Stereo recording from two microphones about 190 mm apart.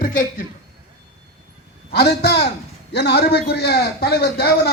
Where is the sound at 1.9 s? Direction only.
60° left (ahead or behind).